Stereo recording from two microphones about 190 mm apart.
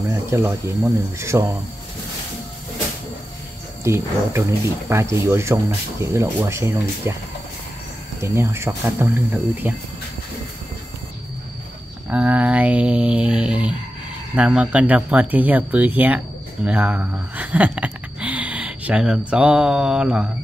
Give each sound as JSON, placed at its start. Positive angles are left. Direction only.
{"t": 0.1, "sound": "speech", "side_deg": -15}
{"t": 3.8, "sound": "speech", "side_deg": -15}
{"t": 8.2, "sound": "speech", "side_deg": -15}
{"t": 12.1, "sound": "speech", "side_deg": -5}